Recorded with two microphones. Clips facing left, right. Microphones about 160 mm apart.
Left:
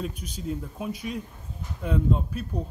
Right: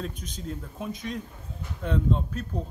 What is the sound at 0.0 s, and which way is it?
Speech, 10° left (ahead or behind).